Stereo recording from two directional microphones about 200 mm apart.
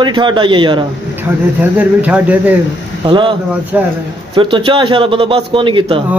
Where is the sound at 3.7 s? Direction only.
5° right (ahead or behind).